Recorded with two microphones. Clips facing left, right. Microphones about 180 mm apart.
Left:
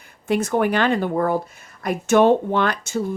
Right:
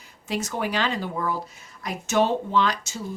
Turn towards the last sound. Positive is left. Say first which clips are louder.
# left 5 dB
turn(degrees=55)  # may be behind; listen again after turning